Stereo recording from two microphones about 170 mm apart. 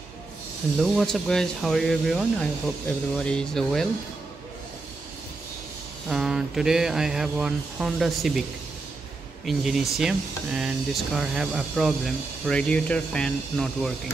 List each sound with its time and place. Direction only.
0.7 s speech: centre (ahead or behind)
6.0 s speech: centre (ahead or behind)
9.5 s speech: centre (ahead or behind)